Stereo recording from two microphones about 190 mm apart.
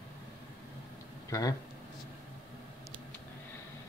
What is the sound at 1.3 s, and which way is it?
Speech, 20° left (ahead or behind).